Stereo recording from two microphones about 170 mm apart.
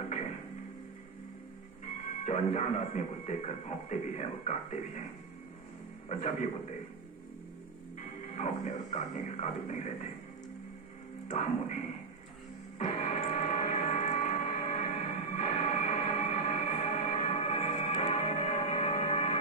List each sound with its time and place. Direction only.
2.2 s speech: 40° left (ahead or behind)
6.0 s speech: 45° left (ahead or behind)
8.4 s speech: 40° left (ahead or behind)
11.2 s speech: 45° left (ahead or behind)
12.7 s music: 45° left (ahead or behind)
17.3 s music: 35° left (ahead or behind)